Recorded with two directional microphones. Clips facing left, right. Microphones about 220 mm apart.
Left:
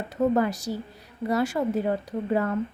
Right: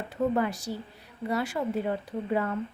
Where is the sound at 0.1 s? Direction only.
40° left (ahead or behind).